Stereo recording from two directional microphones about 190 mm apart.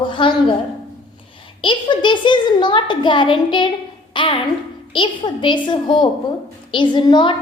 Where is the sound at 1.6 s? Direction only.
25° left (ahead or behind).